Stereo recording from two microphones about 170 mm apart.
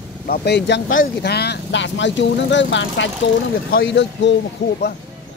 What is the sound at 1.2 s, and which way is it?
Speech, 75° left (ahead or behind).